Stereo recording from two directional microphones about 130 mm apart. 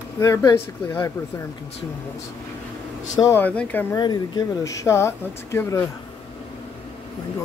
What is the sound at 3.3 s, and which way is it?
Speech, 10° left (ahead or behind).